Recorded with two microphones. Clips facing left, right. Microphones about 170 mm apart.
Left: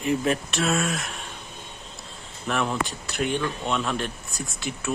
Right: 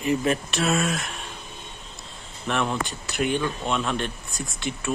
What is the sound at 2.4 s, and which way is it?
Speech, centre (ahead or behind).